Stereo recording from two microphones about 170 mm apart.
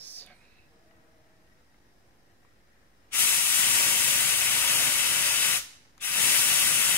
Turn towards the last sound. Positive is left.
turn(degrees=10)  # may be behind; listen again after turning